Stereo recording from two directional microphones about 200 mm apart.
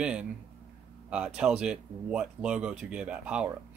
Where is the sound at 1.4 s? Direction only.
5° right (ahead or behind).